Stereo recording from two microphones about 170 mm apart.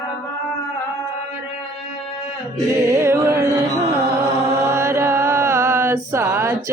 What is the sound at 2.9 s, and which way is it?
Music, 15° right (ahead or behind).